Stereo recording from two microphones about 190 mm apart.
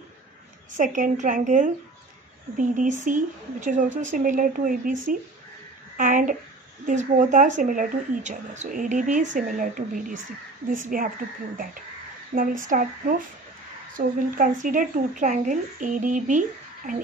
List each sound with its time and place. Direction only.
0.7 s a woman's voice: 40° right (ahead or behind)
13.9 s speech: 45° right (ahead or behind)